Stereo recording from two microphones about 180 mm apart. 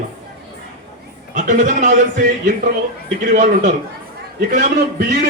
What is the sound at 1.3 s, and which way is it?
Speech, 45° right (ahead or behind).